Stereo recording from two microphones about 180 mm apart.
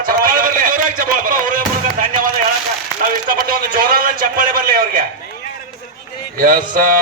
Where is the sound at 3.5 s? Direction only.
55° right (ahead or behind).